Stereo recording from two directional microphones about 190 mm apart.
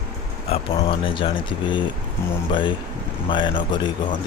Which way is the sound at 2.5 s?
25° left (ahead or behind).